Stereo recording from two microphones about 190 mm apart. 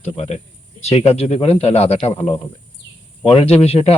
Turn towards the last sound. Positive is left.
turn(degrees=35)  # may be behind; listen again after turning